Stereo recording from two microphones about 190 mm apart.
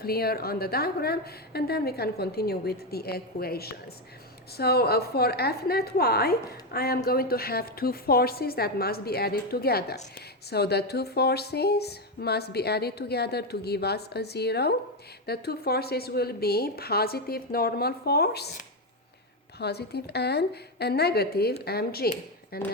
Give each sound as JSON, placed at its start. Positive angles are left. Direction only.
{"t": 0.0, "sound": "a woman's voice", "side_deg": 55}
{"t": 19.5, "sound": "a woman's voice", "side_deg": 60}